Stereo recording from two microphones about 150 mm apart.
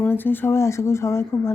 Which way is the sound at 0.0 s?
15° left (ahead or behind).